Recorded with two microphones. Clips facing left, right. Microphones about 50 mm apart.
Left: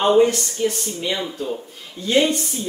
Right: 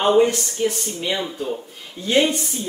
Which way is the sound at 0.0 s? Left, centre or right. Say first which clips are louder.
Left 1 dB; centre.